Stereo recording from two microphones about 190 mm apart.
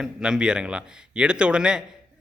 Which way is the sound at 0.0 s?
5° right (ahead or behind).